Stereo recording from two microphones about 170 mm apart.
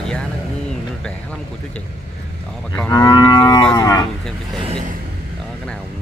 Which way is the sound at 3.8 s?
20° left (ahead or behind).